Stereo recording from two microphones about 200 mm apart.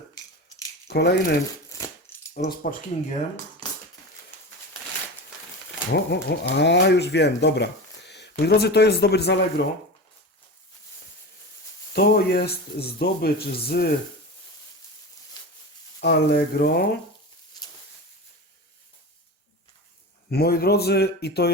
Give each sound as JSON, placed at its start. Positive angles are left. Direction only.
{"t": 0.9, "sound": "speech", "side_deg": 55}
{"t": 2.3, "sound": "speech", "side_deg": 40}
{"t": 5.9, "sound": "speech", "side_deg": 55}
{"t": 11.9, "sound": "speech", "side_deg": 50}
{"t": 16.0, "sound": "speech", "side_deg": 50}
{"t": 20.3, "sound": "speech", "side_deg": 50}